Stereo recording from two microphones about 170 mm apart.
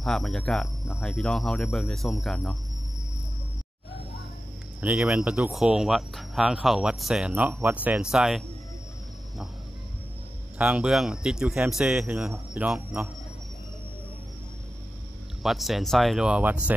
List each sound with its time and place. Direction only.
0.0 s speech: centre (ahead or behind)
0.8 s speech: 15° left (ahead or behind)
1.1 s speech: centre (ahead or behind)
4.8 s speech: 5° right (ahead or behind)
10.6 s speech: 5° right (ahead or behind)
15.4 s speech: centre (ahead or behind)